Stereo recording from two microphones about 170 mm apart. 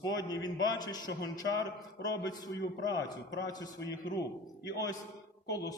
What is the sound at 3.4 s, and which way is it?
Speech, 20° left (ahead or behind).